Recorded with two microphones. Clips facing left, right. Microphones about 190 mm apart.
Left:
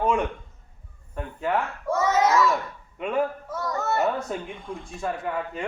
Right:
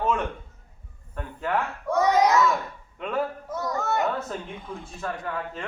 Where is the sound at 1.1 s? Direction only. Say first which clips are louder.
Left 1 dB; 10° left (ahead or behind).